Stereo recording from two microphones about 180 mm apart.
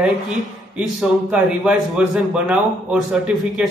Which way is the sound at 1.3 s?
5° right (ahead or behind).